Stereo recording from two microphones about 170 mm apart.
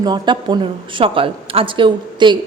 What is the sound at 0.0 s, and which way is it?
A woman's voice, 25° right (ahead or behind).